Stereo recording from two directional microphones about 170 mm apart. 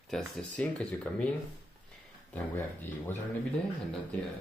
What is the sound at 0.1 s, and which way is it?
Speech, 5° left (ahead or behind).